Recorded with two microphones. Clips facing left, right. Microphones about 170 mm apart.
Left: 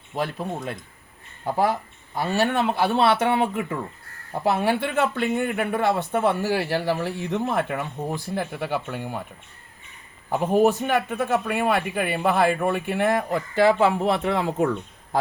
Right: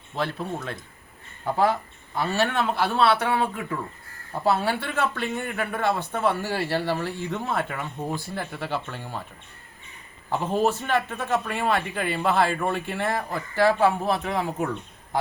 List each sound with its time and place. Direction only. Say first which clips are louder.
0.2 s a man's voice: left 1 dB; 15° left (ahead or behind)
10.3 s speech: left 4 dB; 15° left (ahead or behind)
14.0 s a man's voice: left 3 dB; 80° left